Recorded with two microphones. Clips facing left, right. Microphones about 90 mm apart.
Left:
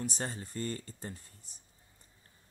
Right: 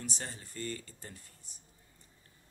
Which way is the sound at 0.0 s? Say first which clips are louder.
Left 5 dB; 40° left (ahead or behind).